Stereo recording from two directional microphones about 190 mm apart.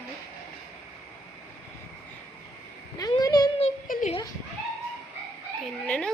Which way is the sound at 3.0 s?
20° left (ahead or behind).